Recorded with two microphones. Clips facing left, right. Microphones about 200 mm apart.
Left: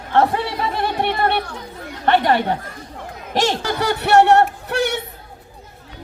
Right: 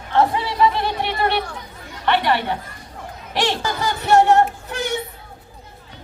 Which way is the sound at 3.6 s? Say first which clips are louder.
Left 3 dB; 65° left (ahead or behind).